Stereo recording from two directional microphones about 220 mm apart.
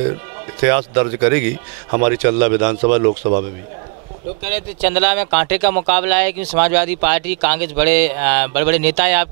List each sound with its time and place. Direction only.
0.6 s speech: 15° right (ahead or behind)
3.1 s a man's voice: 30° right (ahead or behind)
4.5 s speech: 10° right (ahead or behind)